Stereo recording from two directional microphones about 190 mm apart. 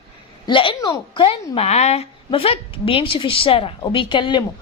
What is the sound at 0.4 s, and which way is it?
A woman's voice, 25° left (ahead or behind).